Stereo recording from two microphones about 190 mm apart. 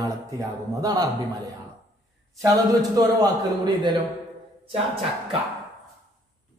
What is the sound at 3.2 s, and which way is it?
Speech, 20° right (ahead or behind).